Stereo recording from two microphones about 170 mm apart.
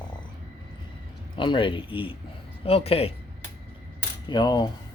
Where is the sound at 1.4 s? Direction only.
30° left (ahead or behind).